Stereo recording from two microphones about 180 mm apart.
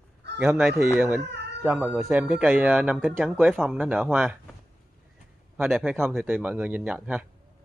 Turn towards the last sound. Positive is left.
turn(degrees=-10)  # may be behind; listen again after turning